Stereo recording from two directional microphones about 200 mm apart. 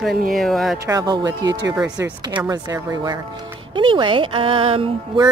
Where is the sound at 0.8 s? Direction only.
20° right (ahead or behind).